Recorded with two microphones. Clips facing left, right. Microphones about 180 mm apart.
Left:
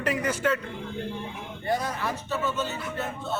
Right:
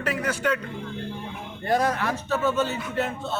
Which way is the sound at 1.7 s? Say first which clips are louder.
Right 5 dB; 75° right (ahead or behind).